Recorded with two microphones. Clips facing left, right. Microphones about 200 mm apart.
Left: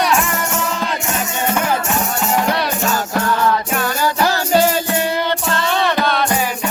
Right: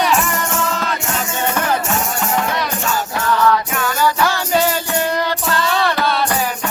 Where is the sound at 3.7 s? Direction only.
30° left (ahead or behind).